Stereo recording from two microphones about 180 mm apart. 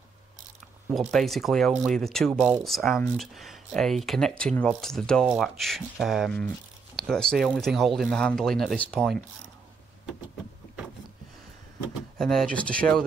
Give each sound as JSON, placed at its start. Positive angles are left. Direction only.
{"t": 0.9, "sound": "speech", "side_deg": 0}
{"t": 2.8, "sound": "speech", "side_deg": 10}
{"t": 3.2, "sound": "speech", "side_deg": 0}
{"t": 12.2, "sound": "speech", "side_deg": 5}